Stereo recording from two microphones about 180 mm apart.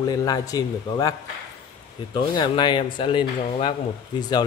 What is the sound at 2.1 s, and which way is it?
Speech, 25° left (ahead or behind).